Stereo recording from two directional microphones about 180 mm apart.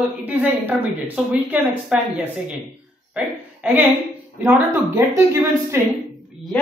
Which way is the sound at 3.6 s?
10° right (ahead or behind).